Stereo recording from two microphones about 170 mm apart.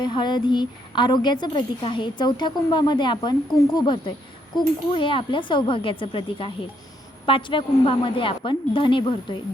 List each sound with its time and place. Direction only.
0.0 s a woman's voice: 25° left (ahead or behind)